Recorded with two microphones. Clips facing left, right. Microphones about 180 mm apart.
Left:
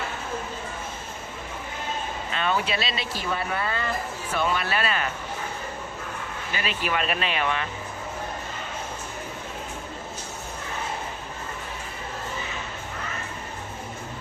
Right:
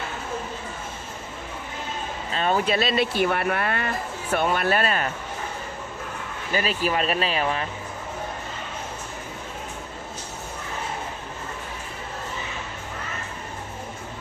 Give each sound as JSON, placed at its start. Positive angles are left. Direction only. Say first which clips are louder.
{"t": 2.3, "sound": "speech", "louder": "right 4 dB", "side_deg": -40}
{"t": 4.3, "sound": "speech", "louder": "right 4 dB", "side_deg": -50}
{"t": 6.5, "sound": "speech", "louder": "right 5 dB", "side_deg": -40}